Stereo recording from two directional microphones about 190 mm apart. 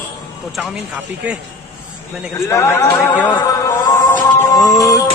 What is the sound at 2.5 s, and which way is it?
A man's voice, 15° left (ahead or behind).